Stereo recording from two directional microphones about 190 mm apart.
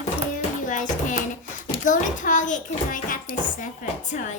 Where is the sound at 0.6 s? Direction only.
40° left (ahead or behind).